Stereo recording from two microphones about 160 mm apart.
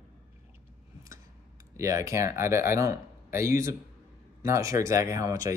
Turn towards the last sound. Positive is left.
turn(degrees=-20)  # may be behind; listen again after turning